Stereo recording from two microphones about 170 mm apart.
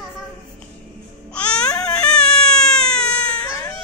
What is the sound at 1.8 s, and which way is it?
Baby cry, 5° left (ahead or behind).